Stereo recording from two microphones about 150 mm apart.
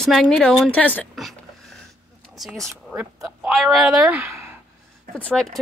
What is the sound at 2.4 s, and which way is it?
Speech, centre (ahead or behind).